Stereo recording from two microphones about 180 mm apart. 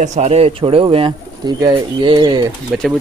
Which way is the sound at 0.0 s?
40° right (ahead or behind).